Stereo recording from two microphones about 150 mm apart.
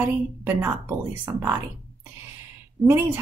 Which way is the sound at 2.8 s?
15° right (ahead or behind).